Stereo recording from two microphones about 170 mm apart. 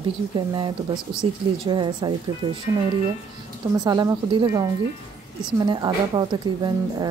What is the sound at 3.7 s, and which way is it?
A woman's voice, 20° right (ahead or behind).